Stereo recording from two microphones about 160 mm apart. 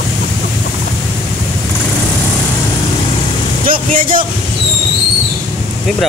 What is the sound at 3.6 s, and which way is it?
Speech, 60° right (ahead or behind).